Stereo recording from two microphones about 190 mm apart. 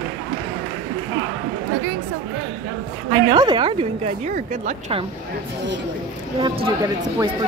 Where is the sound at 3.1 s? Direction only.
25° right (ahead or behind); by 4.7 s 40° right (ahead or behind).